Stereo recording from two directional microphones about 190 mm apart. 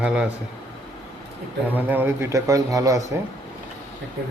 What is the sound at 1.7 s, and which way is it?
A man's voice, 10° right (ahead or behind).